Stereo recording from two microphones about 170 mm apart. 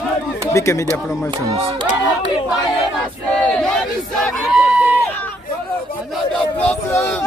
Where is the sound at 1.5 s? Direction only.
35° right (ahead or behind).